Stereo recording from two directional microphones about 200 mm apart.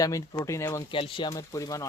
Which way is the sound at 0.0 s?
15° left (ahead or behind).